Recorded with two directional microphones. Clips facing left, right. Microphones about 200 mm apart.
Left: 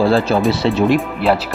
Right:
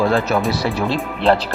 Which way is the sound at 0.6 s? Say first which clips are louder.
Left 6 dB; 20° left (ahead or behind).